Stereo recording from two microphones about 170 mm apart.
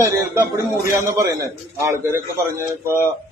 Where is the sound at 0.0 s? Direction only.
15° right (ahead or behind).